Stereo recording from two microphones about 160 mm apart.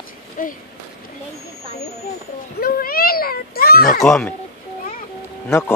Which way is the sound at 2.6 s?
70° left (ahead or behind).